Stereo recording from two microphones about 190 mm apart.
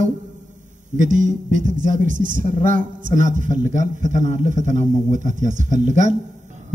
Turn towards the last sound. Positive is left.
turn(degrees=-40)  # may be behind; listen again after turning